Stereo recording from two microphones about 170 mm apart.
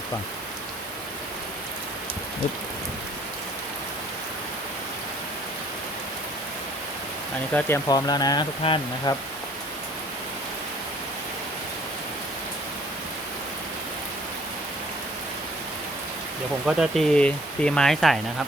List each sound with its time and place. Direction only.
7.5 s speech: 10° left (ahead or behind)
7.9 s speech: 20° left (ahead or behind)
16.6 s speech: centre (ahead or behind)